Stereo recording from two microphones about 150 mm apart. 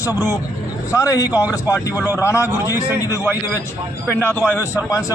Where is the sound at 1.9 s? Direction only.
10° right (ahead or behind).